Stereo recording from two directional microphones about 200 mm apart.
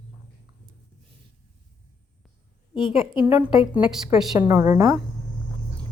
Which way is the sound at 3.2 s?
5° right (ahead or behind).